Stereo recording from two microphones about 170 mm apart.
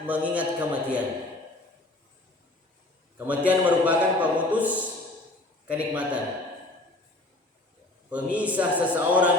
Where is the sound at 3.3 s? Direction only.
10° right (ahead or behind).